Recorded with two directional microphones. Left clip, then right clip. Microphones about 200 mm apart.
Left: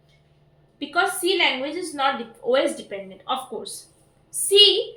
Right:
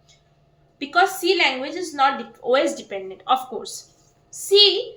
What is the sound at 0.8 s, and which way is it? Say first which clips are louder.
Speech: right 4 dB; 25° right (ahead or behind).